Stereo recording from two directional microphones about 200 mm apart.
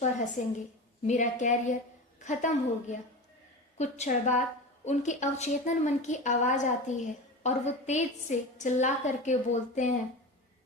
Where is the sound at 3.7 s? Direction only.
35° left (ahead or behind).